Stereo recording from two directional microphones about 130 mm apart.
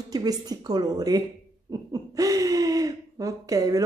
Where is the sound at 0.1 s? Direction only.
30° right (ahead or behind).